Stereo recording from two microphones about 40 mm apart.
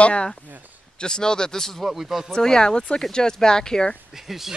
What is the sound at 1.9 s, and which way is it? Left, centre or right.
Speech, centre.